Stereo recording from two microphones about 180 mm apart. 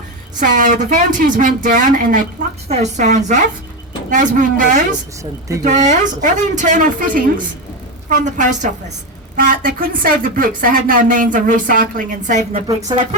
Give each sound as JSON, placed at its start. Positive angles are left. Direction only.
{"t": 0.3, "sound": "a woman's voice", "side_deg": -45}